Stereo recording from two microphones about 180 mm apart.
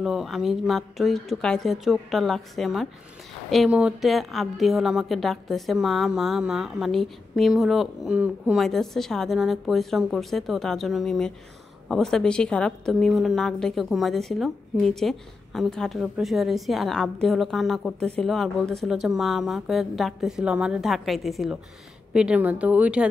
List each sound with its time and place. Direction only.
0.0 s a woman's voice: centre (ahead or behind)